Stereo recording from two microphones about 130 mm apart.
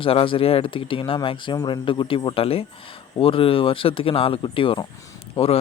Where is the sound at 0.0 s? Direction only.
45° left (ahead or behind).